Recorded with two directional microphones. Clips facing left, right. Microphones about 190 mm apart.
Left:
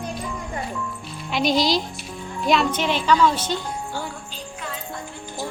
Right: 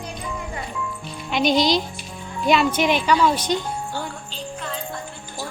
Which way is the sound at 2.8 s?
15° right (ahead or behind).